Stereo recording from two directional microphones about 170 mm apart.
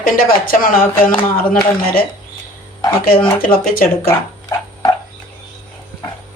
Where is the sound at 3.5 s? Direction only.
60° left (ahead or behind).